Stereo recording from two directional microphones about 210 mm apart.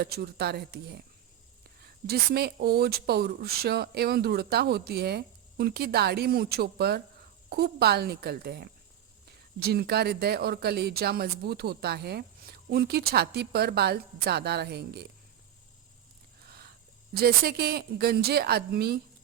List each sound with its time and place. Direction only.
0.0 s speech: 50° right (ahead or behind)
16.5 s a sound: 50° right (ahead or behind)
17.2 s speech: 45° right (ahead or behind)